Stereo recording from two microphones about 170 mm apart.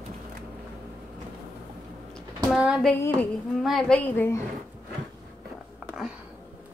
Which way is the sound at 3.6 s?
Centre (ahead or behind).